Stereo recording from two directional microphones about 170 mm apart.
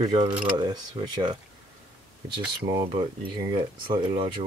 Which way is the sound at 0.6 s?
25° right (ahead or behind).